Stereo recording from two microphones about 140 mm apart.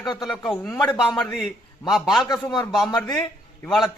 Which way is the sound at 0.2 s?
Centre (ahead or behind).